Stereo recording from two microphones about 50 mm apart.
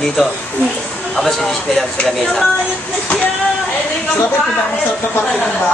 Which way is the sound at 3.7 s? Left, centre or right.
Left.